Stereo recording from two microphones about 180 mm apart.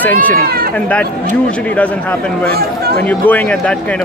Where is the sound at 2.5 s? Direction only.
60° right (ahead or behind).